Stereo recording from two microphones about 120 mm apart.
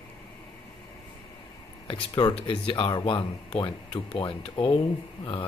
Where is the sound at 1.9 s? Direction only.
40° left (ahead or behind).